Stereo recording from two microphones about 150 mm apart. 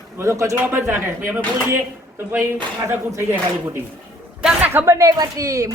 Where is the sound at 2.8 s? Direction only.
20° right (ahead or behind).